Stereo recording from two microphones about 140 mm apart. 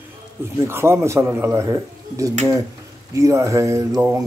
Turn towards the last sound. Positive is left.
turn(degrees=-20)  # may be behind; listen again after turning